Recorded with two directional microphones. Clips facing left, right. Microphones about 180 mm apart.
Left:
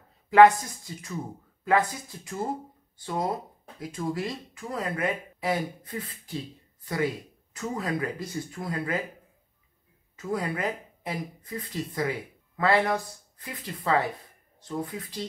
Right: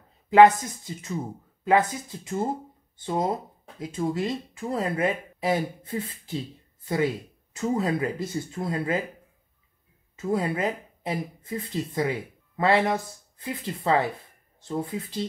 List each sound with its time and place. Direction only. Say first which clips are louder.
0.3 s speech: right 1 dB; 20° right (ahead or behind)
10.1 s speech: right 4 dB; 25° right (ahead or behind)